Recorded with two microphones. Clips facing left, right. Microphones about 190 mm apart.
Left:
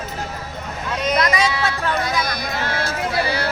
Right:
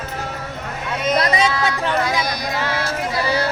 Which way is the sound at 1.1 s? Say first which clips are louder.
Right 2 dB; 30° right (ahead or behind).